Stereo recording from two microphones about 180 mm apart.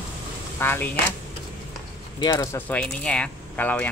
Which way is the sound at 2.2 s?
20° left (ahead or behind).